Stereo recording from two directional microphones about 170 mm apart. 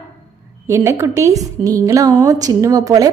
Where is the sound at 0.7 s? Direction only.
15° right (ahead or behind).